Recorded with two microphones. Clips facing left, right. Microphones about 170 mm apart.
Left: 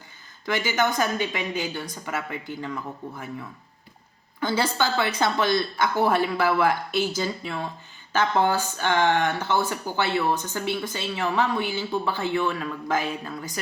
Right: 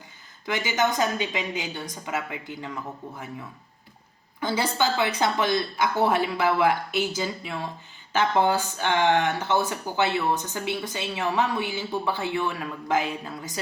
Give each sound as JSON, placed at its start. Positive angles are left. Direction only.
{"t": 0.4, "sound": "a woman's voice", "side_deg": -20}
{"t": 4.4, "sound": "a woman's voice", "side_deg": -15}